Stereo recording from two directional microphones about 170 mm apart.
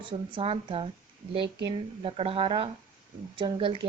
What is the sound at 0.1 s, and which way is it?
Speech, 30° right (ahead or behind).